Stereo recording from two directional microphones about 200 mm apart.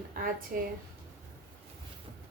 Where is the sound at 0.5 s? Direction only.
45° right (ahead or behind).